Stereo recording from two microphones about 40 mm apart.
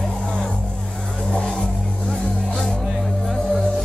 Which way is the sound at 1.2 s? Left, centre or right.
Left.